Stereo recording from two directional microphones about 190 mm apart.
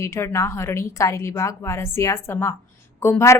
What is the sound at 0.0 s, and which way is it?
A woman's voice, 15° left (ahead or behind).